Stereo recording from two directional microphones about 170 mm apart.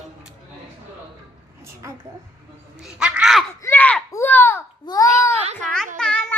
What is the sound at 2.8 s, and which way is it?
Speech, 5° right (ahead or behind).